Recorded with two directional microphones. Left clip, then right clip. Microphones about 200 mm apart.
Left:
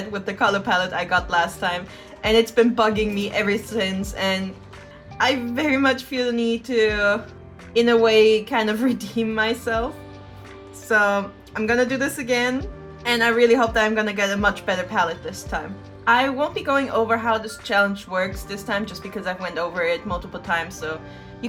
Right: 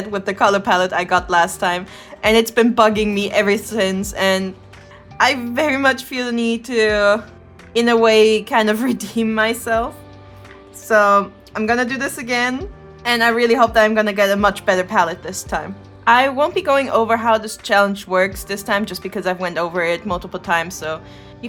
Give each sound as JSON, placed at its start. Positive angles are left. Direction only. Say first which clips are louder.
{"t": 0.1, "sound": "a woman's voice", "louder": "right 5 dB", "side_deg": -55}